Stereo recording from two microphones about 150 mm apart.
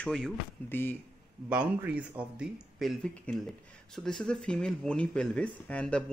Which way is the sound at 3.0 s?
5° left (ahead or behind).